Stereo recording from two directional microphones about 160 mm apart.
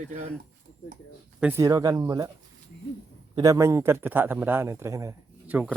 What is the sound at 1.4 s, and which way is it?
Speech, 15° right (ahead or behind).